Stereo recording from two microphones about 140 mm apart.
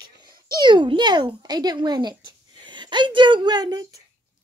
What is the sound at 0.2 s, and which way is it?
A child's voice, 30° right (ahead or behind).